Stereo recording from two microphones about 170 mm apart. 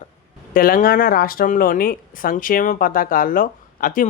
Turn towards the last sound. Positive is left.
turn(degrees=55)  # may be behind; listen again after turning